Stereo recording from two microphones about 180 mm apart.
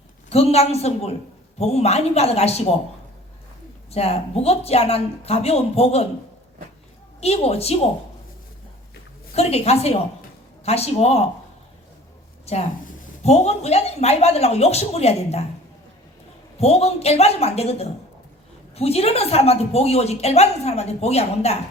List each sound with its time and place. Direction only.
0.3 s speech: 35° left (ahead or behind)
3.9 s speech: 35° left (ahead or behind)
7.2 s speech: 35° left (ahead or behind)
9.3 s speech: 35° left (ahead or behind)
12.5 s speech: 35° left (ahead or behind)
16.6 s speech: 35° left (ahead or behind)